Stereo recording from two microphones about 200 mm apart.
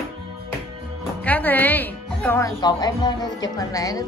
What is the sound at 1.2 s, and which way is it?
A woman's voice, 10° left (ahead or behind).